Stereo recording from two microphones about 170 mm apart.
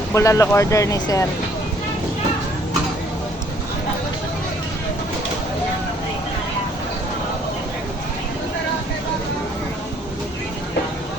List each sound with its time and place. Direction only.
0.1 s speech: 20° left (ahead or behind)